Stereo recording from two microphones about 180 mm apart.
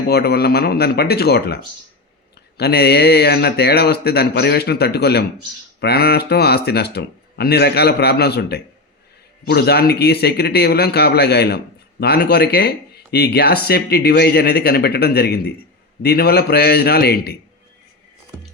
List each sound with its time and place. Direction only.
0.1 s speech: 60° left (ahead or behind)
2.6 s speech: 65° left (ahead or behind)